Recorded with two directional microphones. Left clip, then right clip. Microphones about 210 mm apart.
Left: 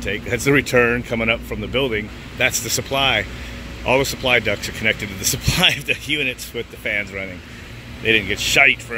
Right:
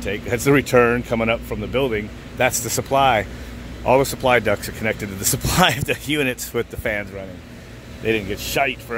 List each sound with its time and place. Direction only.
0.0 s speech: 10° right (ahead or behind)